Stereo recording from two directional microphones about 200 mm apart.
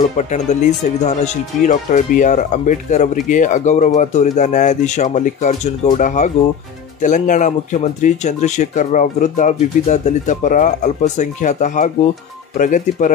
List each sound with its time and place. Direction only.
0.2 s speech: 35° left (ahead or behind)